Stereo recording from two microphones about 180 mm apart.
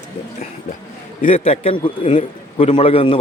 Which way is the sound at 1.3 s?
35° left (ahead or behind).